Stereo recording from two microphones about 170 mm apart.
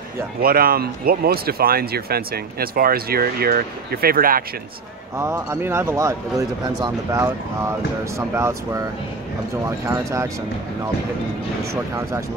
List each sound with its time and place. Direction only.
0.4 s speech: 60° right (ahead or behind)
5.1 s speech: 15° right (ahead or behind)
9.8 s speech: 15° right (ahead or behind)